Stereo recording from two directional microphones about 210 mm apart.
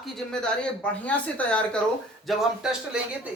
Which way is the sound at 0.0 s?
5° left (ahead or behind).